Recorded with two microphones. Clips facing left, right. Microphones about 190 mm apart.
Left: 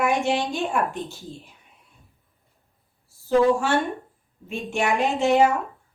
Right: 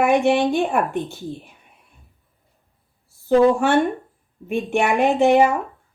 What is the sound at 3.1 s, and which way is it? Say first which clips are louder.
A woman's voice: right 4 dB; 55° right (ahead or behind).